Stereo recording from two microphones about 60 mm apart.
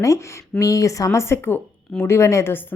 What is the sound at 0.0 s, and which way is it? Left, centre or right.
Speech, left.